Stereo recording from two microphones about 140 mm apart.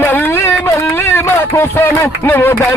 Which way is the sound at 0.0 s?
15° left (ahead or behind).